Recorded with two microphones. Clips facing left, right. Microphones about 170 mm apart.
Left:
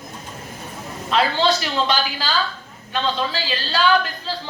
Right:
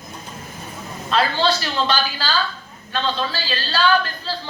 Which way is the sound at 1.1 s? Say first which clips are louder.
Left 1 dB; 15° left (ahead or behind).